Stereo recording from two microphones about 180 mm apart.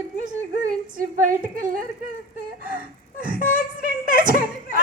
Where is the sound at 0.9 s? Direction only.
50° right (ahead or behind).